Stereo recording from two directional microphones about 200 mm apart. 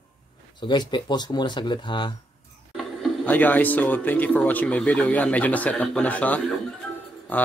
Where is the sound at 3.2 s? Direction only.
10° left (ahead or behind).